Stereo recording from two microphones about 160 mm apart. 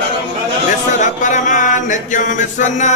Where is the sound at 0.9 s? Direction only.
50° left (ahead or behind).